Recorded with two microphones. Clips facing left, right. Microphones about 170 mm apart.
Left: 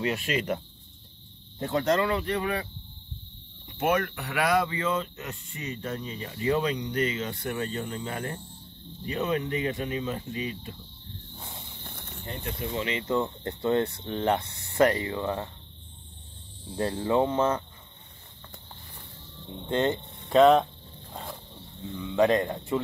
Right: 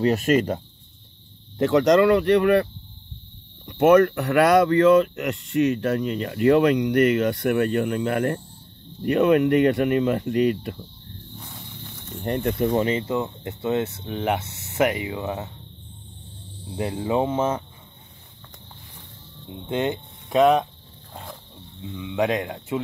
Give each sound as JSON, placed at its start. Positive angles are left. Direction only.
{"t": 0.0, "sound": "speech", "side_deg": -40}
{"t": 1.6, "sound": "speech", "side_deg": -80}
{"t": 4.4, "sound": "speech", "side_deg": -70}
{"t": 11.3, "sound": "cricket", "side_deg": 25}
{"t": 12.1, "sound": "speech", "side_deg": -65}
{"t": 13.0, "sound": "speech", "side_deg": -10}
{"t": 16.7, "sound": "speech", "side_deg": -10}
{"t": 19.4, "sound": "speech", "side_deg": -15}
{"t": 19.9, "sound": "speech", "side_deg": 0}
{"t": 21.1, "sound": "wild animals", "side_deg": 0}
{"t": 21.8, "sound": "speech", "side_deg": -5}